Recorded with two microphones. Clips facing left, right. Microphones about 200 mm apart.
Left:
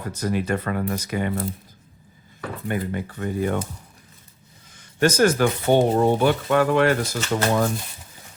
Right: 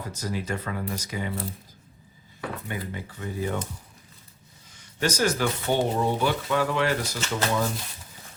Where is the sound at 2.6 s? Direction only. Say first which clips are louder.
Left 8 dB; 55° left (ahead or behind).